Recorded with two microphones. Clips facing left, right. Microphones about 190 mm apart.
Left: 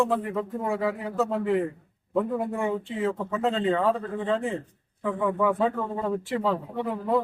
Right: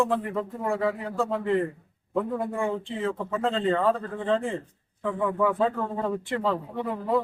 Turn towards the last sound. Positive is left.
turn(degrees=0)  # may be behind; listen again after turning